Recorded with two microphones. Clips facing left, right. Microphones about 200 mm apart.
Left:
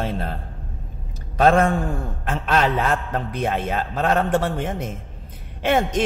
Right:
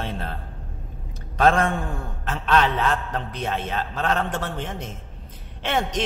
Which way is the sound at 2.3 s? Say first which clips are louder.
Left 1 dB; 45° left (ahead or behind).